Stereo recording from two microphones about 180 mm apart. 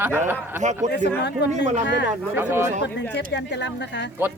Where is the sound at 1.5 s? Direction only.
40° right (ahead or behind).